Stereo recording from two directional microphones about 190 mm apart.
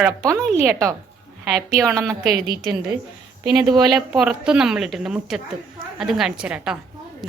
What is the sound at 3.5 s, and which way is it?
Speech, 20° right (ahead or behind).